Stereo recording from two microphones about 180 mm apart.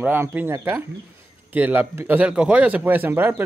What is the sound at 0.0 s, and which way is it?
A man's voice, 10° right (ahead or behind).